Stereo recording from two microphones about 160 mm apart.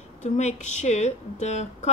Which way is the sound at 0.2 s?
45° left (ahead or behind).